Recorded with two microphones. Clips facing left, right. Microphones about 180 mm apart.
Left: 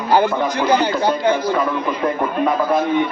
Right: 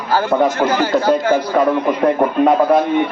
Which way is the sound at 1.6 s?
55° right (ahead or behind).